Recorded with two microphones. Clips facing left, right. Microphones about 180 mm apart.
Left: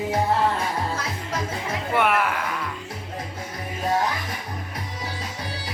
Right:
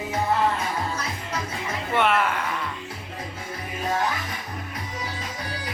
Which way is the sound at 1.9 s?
10° left (ahead or behind).